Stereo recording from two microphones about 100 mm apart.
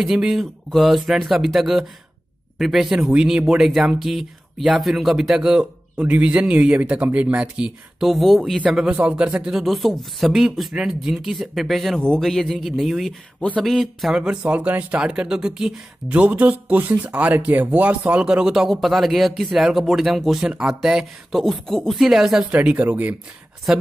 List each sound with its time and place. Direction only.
0.0 s speech: centre (ahead or behind)
8.6 s speech: 10° right (ahead or behind)
22.5 s speech: 15° right (ahead or behind)
23.7 s speech: 5° right (ahead or behind)